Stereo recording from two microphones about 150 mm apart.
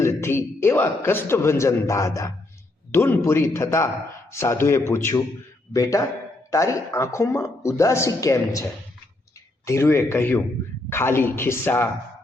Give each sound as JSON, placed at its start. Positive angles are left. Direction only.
{"t": 0.0, "sound": "a man's voice", "side_deg": 20}